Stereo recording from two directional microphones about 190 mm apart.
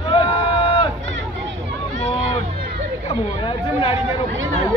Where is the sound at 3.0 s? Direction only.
30° left (ahead or behind).